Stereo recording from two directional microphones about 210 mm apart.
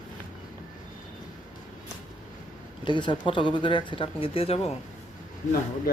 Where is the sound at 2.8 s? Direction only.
20° left (ahead or behind).